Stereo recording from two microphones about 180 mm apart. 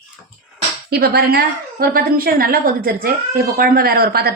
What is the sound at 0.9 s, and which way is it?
A woman's voice, 60° right (ahead or behind).